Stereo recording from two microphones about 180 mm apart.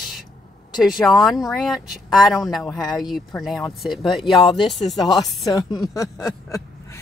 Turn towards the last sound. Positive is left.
turn(degrees=15)  # may be behind; listen again after turning